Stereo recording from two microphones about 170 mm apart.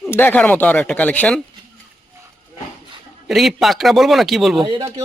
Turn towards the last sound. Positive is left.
turn(degrees=-30)  # may be behind; listen again after turning